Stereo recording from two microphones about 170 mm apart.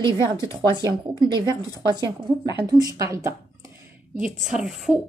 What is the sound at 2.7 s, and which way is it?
Speech, 20° right (ahead or behind).